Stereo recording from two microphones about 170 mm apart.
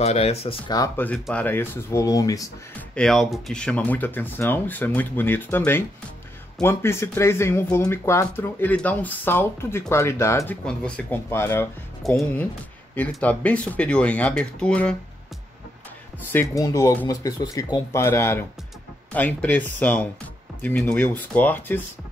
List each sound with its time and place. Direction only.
0.0 s speech: 40° left (ahead or behind)
0.7 s speech: 15° left (ahead or behind)
2.9 s speech: 5° left (ahead or behind)
10.6 s speech: 5° left (ahead or behind)
12.0 s speech: centre (ahead or behind)
16.3 s speech: 10° left (ahead or behind)